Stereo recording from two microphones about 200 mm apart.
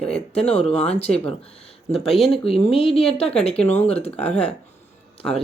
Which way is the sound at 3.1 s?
5° left (ahead or behind).